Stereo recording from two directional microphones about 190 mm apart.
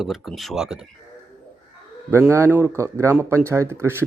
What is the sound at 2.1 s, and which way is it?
Speech, 15° right (ahead or behind).